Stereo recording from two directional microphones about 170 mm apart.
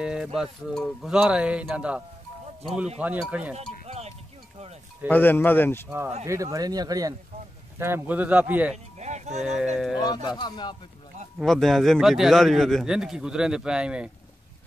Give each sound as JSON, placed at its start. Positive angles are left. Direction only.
{"t": 0.0, "sound": "a man's voice", "side_deg": -5}
{"t": 3.5, "sound": "a sound", "side_deg": -40}
{"t": 5.1, "sound": "speech", "side_deg": 10}
{"t": 5.9, "sound": "a man's voice", "side_deg": -15}
{"t": 8.9, "sound": "a sound", "side_deg": -40}
{"t": 9.4, "sound": "a man's voice", "side_deg": -5}
{"t": 9.9, "sound": "speech", "side_deg": 25}
{"t": 11.3, "sound": "a man's voice", "side_deg": 0}